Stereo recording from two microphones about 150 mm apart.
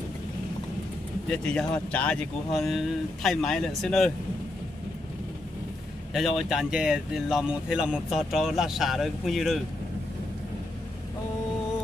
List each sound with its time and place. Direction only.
1.3 s speech: 5° left (ahead or behind)
6.1 s speech: centre (ahead or behind)